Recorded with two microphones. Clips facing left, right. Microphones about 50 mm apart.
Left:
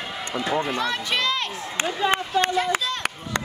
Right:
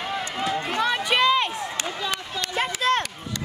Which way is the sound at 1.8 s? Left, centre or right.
Left.